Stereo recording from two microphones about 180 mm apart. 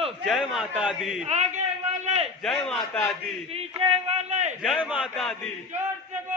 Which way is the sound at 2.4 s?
5° left (ahead or behind).